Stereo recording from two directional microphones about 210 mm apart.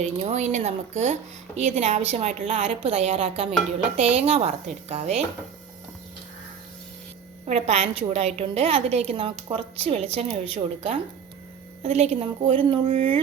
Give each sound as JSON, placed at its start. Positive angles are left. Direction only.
{"t": 0.0, "sound": "a woman's voice", "side_deg": -35}
{"t": 7.4, "sound": "a woman's voice", "side_deg": -30}